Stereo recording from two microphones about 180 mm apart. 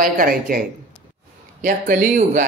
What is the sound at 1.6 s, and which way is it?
Speech, 50° right (ahead or behind).